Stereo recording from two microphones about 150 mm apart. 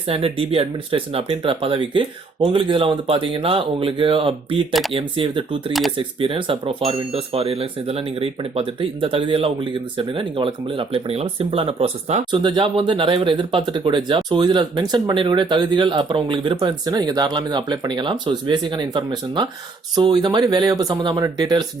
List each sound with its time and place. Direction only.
0.1 s speech: 40° right (ahead or behind)
4.7 s speech: centre (ahead or behind)
4.9 s speech: 35° right (ahead or behind)
12.3 s speech: 30° right (ahead or behind)